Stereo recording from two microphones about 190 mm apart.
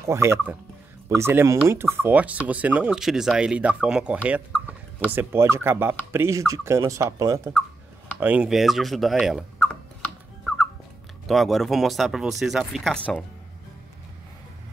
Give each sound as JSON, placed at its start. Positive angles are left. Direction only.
{"t": 0.0, "sound": "speech", "side_deg": -15}
{"t": 8.2, "sound": "a sound", "side_deg": -5}
{"t": 11.2, "sound": "speech", "side_deg": 0}